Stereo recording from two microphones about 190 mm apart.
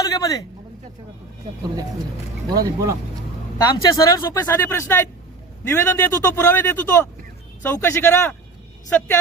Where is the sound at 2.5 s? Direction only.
15° right (ahead or behind).